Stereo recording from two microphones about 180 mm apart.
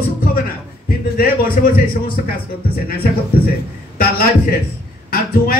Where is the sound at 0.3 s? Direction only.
50° left (ahead or behind).